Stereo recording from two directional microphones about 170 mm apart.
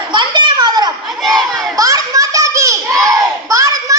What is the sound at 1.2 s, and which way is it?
Crowd, centre (ahead or behind).